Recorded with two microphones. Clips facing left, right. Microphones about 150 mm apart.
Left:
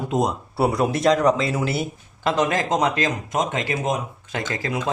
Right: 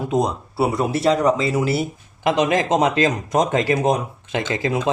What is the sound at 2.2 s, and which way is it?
Speech, 15° right (ahead or behind).